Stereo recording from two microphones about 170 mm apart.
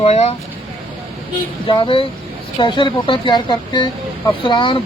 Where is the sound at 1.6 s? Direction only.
30° left (ahead or behind).